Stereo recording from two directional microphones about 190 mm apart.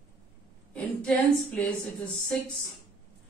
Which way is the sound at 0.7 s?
5° left (ahead or behind).